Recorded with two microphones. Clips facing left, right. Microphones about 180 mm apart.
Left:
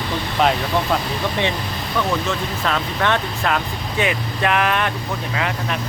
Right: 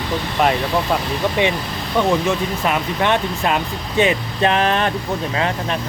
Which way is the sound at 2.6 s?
15° right (ahead or behind).